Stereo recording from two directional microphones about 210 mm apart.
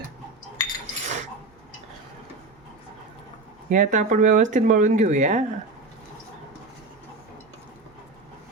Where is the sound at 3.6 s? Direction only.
35° right (ahead or behind).